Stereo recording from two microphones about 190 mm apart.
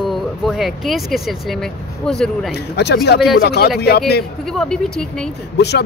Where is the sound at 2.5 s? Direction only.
60° left (ahead or behind).